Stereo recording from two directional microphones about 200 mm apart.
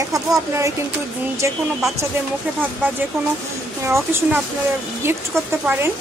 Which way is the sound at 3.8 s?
15° right (ahead or behind).